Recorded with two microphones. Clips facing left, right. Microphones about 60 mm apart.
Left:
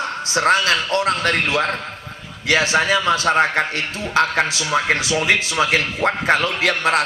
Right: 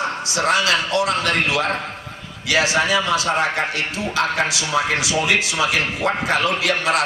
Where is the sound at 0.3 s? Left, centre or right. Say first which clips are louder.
Left 3 dB; left.